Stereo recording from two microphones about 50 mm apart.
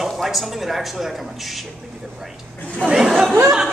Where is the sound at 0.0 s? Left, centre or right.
Centre.